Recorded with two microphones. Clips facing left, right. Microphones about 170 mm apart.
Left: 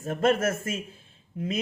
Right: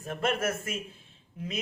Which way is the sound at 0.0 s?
45° left (ahead or behind).